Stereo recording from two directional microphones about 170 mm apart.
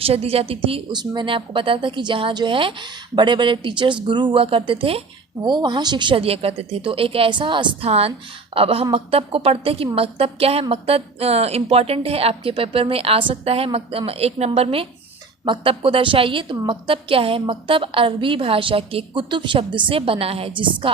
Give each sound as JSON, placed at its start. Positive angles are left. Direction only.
{"t": 0.0, "sound": "a woman's voice", "side_deg": -35}